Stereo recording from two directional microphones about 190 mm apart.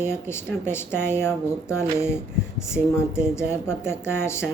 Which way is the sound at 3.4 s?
15° left (ahead or behind).